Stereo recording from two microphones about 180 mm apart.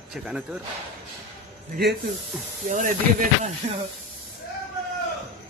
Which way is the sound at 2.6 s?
45° right (ahead or behind).